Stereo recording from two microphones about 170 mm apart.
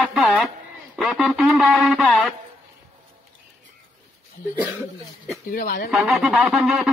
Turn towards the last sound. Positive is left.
turn(degrees=-5)  # may be behind; listen again after turning